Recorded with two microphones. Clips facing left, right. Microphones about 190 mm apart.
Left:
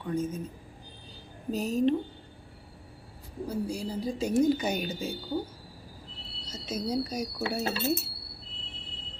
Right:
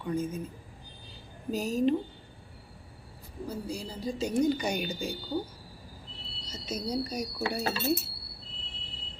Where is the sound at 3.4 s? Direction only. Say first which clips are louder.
Left 4 dB; 10° left (ahead or behind).